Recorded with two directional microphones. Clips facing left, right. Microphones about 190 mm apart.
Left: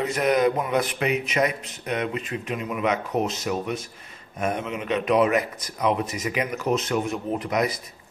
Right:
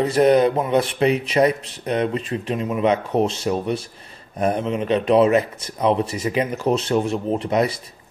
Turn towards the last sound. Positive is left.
turn(degrees=-30)  # may be behind; listen again after turning